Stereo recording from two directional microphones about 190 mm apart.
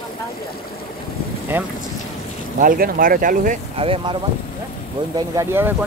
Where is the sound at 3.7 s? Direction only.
30° right (ahead or behind); by 5.9 s 10° right (ahead or behind).